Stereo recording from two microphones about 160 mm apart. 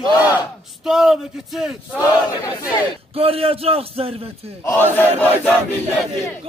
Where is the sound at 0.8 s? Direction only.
Centre (ahead or behind).